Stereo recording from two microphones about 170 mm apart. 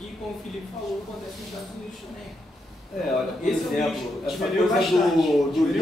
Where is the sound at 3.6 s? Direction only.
Centre (ahead or behind).